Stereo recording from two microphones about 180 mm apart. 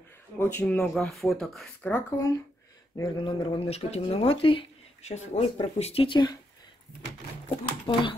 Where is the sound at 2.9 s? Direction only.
20° left (ahead or behind).